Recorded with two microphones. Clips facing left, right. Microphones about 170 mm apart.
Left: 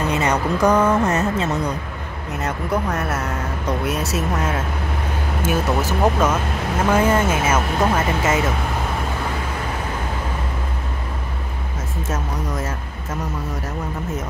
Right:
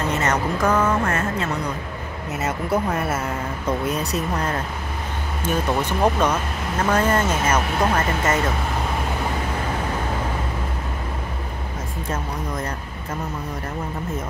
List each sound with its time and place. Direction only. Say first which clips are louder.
0.1 s speech: left 2 dB; 15° left (ahead or behind)
2.4 s speech: even; 5° right (ahead or behind)
12.1 s speech: left 1 dB; 5° left (ahead or behind)